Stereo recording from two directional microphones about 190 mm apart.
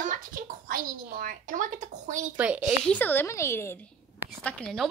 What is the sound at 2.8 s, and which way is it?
Speech, 10° left (ahead or behind).